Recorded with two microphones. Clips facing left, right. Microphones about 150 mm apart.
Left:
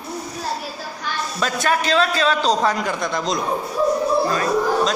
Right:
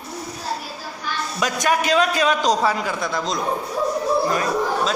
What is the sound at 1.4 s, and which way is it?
A man's voice, 15° right (ahead or behind).